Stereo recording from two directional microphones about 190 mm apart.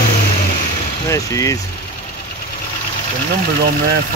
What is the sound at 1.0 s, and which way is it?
Speech, 15° left (ahead or behind).